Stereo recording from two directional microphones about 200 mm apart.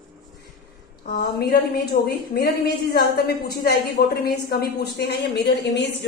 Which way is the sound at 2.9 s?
50° left (ahead or behind).